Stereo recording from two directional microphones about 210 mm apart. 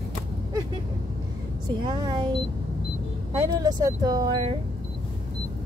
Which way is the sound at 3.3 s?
15° right (ahead or behind).